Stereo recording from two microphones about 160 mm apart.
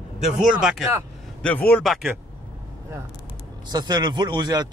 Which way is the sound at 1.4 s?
10° left (ahead or behind).